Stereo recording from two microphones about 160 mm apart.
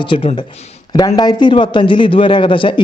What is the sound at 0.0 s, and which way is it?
A man's voice, 35° left (ahead or behind).